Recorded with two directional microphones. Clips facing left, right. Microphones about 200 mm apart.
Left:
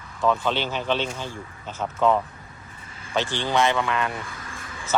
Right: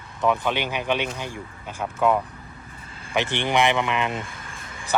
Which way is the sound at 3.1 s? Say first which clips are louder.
Right 1 dB; 20° right (ahead or behind).